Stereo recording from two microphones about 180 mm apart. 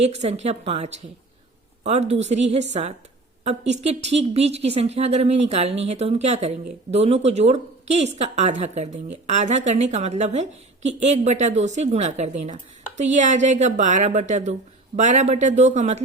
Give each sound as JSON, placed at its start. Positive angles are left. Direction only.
{"t": 0.0, "sound": "a woman's voice", "side_deg": -35}